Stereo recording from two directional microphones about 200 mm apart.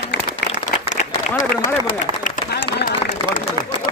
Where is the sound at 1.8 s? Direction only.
40° left (ahead or behind).